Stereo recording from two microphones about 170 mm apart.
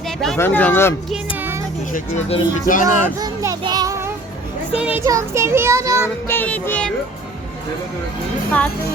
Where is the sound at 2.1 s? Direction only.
35° left (ahead or behind).